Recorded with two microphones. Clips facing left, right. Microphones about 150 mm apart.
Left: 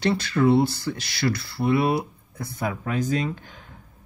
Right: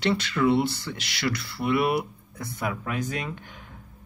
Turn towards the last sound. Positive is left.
turn(degrees=30)  # may be behind; listen again after turning